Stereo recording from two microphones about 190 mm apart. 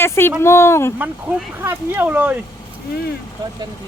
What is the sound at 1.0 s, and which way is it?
Speech, 10° right (ahead or behind).